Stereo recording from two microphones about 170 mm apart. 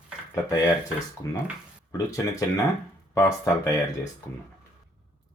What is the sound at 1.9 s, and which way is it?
Speech, 20° left (ahead or behind).